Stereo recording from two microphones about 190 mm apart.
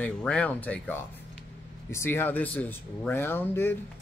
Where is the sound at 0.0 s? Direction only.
5° left (ahead or behind).